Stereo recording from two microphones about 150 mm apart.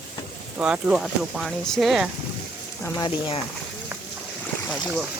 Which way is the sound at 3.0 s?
35° left (ahead or behind).